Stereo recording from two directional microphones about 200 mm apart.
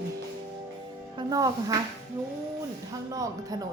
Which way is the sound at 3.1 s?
20° right (ahead or behind).